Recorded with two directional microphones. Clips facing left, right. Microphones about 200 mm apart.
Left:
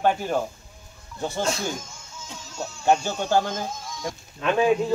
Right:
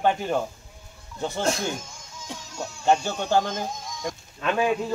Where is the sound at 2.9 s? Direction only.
10° left (ahead or behind).